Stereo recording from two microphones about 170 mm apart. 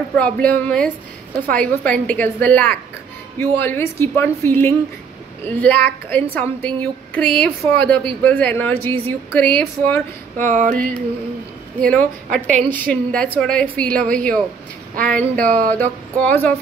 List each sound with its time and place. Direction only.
0.1 s a woman's voice: 10° left (ahead or behind)
10.3 s music: 50° right (ahead or behind)
10.7 s a woman's voice: 5° left (ahead or behind)